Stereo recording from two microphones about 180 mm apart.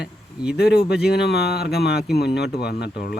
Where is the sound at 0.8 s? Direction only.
60° left (ahead or behind).